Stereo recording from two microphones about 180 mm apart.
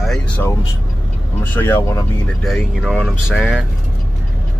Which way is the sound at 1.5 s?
10° left (ahead or behind).